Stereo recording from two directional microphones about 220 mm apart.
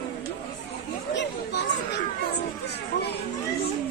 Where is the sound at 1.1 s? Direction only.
50° left (ahead or behind).